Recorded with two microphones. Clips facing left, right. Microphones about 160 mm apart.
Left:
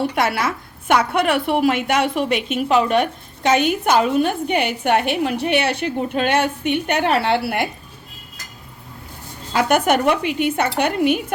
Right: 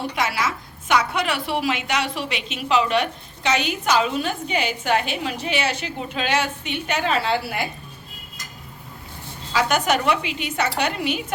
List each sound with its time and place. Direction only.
0.2 s a woman's voice: 55° left (ahead or behind)
9.5 s a woman's voice: 55° left (ahead or behind)